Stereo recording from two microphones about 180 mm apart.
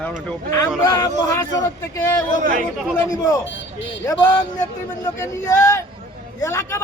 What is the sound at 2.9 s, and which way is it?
Speech, 20° left (ahead or behind).